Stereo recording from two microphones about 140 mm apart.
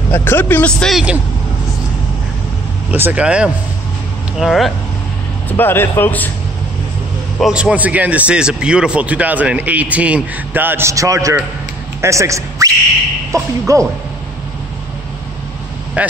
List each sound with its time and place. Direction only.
0.1 s a man's voice: 15° left (ahead or behind); by 1.2 s 5° right (ahead or behind)
2.9 s a man's voice: 10° right (ahead or behind)
5.5 s a man's voice: 15° left (ahead or behind)
7.3 s a man's voice: 5° right (ahead or behind); by 13.8 s 25° right (ahead or behind)
16.0 s speech: 10° right (ahead or behind)